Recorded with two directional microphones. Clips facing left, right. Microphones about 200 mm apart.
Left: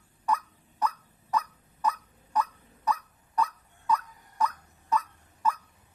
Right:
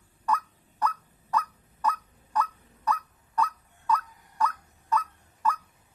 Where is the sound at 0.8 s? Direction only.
20° left (ahead or behind).